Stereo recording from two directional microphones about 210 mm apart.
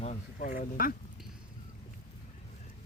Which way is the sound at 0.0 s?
35° left (ahead or behind).